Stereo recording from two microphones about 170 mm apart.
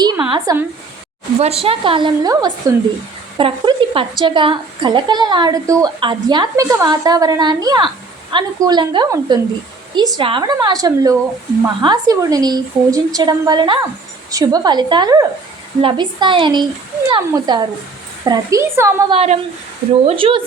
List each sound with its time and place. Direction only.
0.0 s a woman's voice: 25° right (ahead or behind)
1.4 s a woman's voice: 35° right (ahead or behind); by 2.7 s 20° right (ahead or behind)
3.3 s a woman's voice: 30° right (ahead or behind); by 19.1 s 15° right (ahead or behind)
19.1 s a woman's voice: 40° right (ahead or behind)